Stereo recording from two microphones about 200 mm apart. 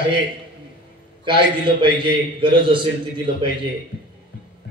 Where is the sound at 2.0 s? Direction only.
25° right (ahead or behind).